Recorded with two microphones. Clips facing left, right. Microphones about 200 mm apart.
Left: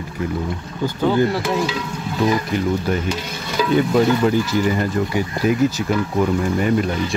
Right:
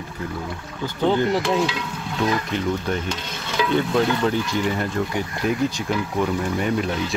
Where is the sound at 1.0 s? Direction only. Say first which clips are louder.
Left 2 dB; 20° right (ahead or behind).